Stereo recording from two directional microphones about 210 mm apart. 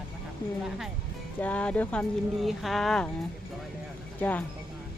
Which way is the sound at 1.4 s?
5° left (ahead or behind).